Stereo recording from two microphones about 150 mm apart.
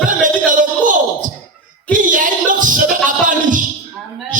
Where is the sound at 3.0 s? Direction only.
60° right (ahead or behind).